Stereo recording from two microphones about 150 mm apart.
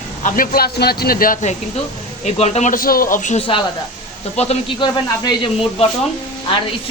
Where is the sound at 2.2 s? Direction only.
45° left (ahead or behind).